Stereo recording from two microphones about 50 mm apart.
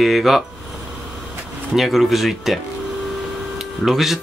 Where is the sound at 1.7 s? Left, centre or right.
Centre.